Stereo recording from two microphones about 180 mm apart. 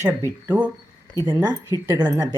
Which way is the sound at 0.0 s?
15° right (ahead or behind).